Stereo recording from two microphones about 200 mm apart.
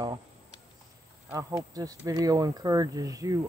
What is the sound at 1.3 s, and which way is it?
Speech, 15° right (ahead or behind).